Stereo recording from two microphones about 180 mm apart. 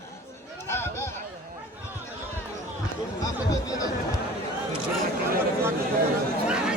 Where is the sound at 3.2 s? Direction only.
20° left (ahead or behind).